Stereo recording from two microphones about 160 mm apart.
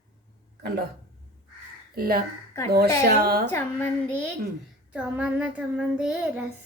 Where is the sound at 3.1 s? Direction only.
70° right (ahead or behind).